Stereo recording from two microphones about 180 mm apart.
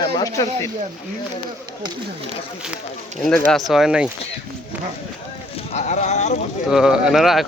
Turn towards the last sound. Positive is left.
turn(degrees=0)  # may be behind; listen again after turning